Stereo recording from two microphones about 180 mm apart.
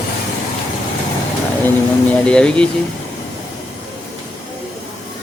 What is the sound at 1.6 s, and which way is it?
Speech, 5° left (ahead or behind).